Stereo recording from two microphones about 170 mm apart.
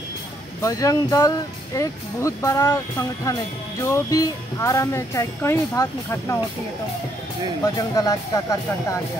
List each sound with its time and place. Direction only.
0.6 s speech: 20° left (ahead or behind)
7.6 s speech: 20° left (ahead or behind)